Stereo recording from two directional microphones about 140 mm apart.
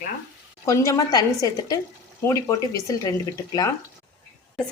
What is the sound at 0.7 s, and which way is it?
A woman's voice, 25° left (ahead or behind).